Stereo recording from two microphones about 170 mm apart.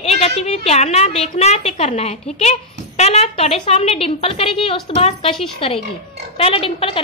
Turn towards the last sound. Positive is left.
turn(degrees=30)  # may be behind; listen again after turning